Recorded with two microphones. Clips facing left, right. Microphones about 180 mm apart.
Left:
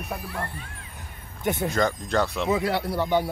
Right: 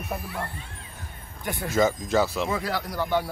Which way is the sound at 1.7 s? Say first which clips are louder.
Right 6 dB; 5° right (ahead or behind).